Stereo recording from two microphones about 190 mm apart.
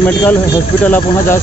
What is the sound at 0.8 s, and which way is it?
Speech, 10° left (ahead or behind).